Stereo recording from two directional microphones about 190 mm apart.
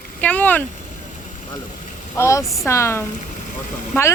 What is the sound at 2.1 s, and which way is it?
Speech, 15° left (ahead or behind).